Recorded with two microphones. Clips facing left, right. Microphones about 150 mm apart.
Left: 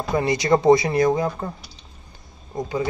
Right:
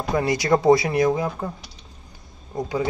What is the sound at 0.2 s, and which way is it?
Speech, 10° right (ahead or behind).